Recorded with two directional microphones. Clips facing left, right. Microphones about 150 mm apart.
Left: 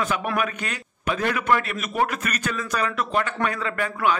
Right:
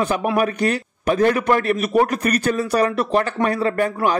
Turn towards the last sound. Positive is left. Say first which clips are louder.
# right 5 dB
turn(degrees=-35)  # may be behind; listen again after turning